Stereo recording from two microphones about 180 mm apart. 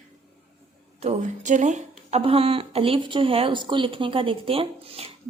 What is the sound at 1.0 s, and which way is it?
A woman's voice, 40° right (ahead or behind).